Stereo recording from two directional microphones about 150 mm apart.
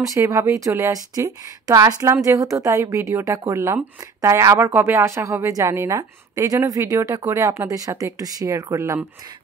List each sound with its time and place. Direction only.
0.0 s a woman's voice: 20° right (ahead or behind)